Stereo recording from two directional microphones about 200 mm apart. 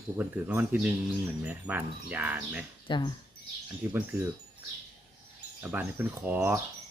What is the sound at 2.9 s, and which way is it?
Speech, 25° left (ahead or behind).